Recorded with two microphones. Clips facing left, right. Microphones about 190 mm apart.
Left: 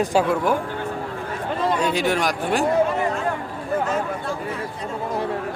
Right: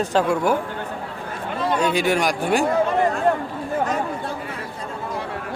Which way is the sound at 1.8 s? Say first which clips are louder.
Right 1 dB; centre (ahead or behind).